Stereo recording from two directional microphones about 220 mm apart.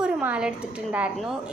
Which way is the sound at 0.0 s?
5° right (ahead or behind).